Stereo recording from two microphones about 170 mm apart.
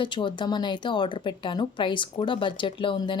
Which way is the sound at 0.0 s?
30° left (ahead or behind).